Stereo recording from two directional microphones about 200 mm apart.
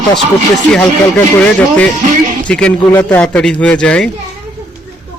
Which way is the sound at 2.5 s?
5° left (ahead or behind).